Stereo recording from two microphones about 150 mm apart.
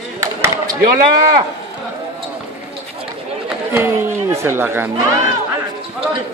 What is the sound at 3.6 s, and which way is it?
Speech, 15° right (ahead or behind).